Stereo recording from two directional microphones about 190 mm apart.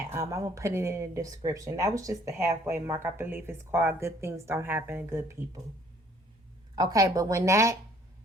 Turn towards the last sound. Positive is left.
turn(degrees=-15)  # may be behind; listen again after turning